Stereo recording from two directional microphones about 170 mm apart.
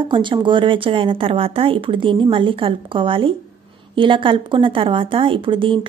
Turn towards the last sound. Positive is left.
turn(degrees=-30)  # may be behind; listen again after turning